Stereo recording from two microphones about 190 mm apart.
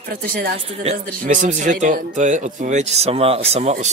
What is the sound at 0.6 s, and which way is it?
Speech, 30° right (ahead or behind).